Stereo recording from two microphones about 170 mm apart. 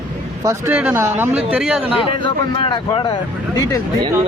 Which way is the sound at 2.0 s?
30° left (ahead or behind).